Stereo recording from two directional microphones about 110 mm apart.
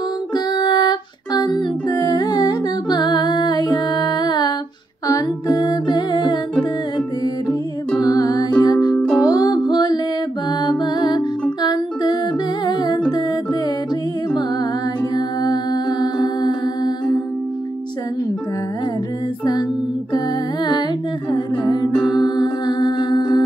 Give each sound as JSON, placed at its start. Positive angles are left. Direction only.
{"t": 0.5, "sound": "music", "side_deg": 40}
{"t": 8.0, "sound": "music", "side_deg": 35}
{"t": 8.9, "sound": "music", "side_deg": 10}
{"t": 9.2, "sound": "music", "side_deg": 35}
{"t": 15.1, "sound": "humming", "side_deg": 40}
{"t": 21.3, "sound": "humming", "side_deg": 40}
{"t": 22.0, "sound": "music", "side_deg": 40}